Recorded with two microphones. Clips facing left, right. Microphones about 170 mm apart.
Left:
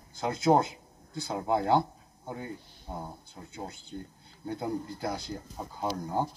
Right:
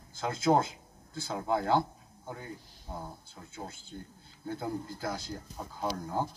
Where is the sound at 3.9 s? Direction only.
30° left (ahead or behind).